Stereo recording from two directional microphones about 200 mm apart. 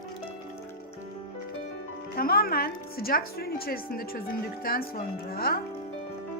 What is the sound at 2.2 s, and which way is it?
Speech, 50° left (ahead or behind).